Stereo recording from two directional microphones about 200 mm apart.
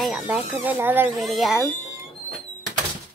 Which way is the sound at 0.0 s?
5° right (ahead or behind).